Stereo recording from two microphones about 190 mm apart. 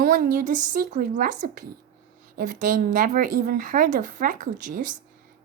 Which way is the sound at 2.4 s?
45° right (ahead or behind).